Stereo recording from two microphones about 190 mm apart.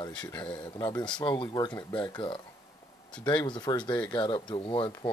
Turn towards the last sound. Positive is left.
turn(degrees=25)  # may be behind; listen again after turning